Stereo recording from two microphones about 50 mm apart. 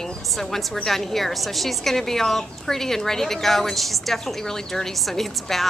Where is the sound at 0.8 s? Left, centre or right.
Centre.